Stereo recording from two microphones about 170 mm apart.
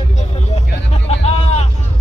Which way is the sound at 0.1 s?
40° left (ahead or behind).